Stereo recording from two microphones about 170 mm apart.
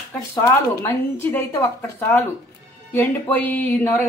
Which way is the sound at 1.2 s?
10° left (ahead or behind).